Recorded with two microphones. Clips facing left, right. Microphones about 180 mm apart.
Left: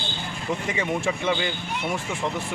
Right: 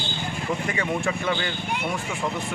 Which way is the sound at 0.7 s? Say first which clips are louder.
Left 2 dB; 20° left (ahead or behind).